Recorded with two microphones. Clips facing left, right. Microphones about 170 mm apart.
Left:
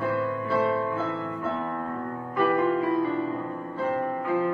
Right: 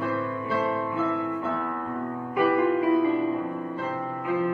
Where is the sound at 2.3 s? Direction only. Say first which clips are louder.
Right 1 dB; 15° right (ahead or behind).